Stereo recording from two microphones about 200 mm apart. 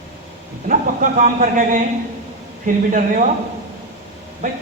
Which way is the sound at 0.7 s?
40° right (ahead or behind).